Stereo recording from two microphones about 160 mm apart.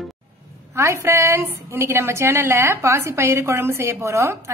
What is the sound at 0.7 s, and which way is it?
A woman's voice, 15° right (ahead or behind).